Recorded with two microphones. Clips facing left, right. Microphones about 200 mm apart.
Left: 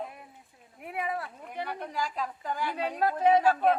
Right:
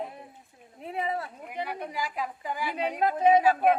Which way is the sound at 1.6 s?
10° right (ahead or behind).